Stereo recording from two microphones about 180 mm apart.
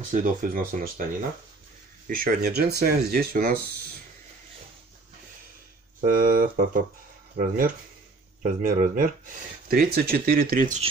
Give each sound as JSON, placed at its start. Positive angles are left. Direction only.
{"t": 0.1, "sound": "speech", "side_deg": -50}
{"t": 2.0, "sound": "speech", "side_deg": -55}
{"t": 5.9, "sound": "speech", "side_deg": -50}